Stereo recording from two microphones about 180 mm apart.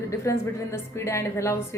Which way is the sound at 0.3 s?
15° left (ahead or behind).